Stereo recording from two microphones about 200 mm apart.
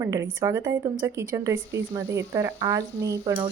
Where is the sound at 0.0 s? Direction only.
15° right (ahead or behind).